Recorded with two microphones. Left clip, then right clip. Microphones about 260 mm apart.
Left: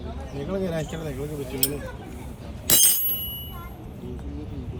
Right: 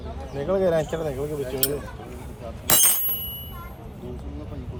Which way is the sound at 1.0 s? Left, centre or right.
Centre.